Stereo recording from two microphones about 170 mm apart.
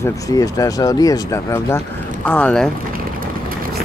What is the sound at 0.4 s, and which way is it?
Speech, 20° left (ahead or behind).